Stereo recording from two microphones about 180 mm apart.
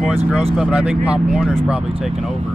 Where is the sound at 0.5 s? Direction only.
5° right (ahead or behind).